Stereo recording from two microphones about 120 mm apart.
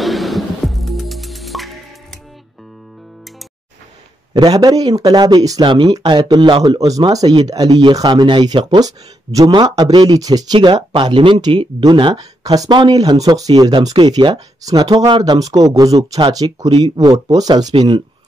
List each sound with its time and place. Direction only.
0.0 s music: centre (ahead or behind)
4.3 s speech: 35° right (ahead or behind)
8.7 s speech: 30° right (ahead or behind)